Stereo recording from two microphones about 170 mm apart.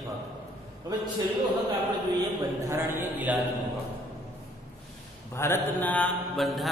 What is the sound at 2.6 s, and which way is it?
Speech, 15° right (ahead or behind).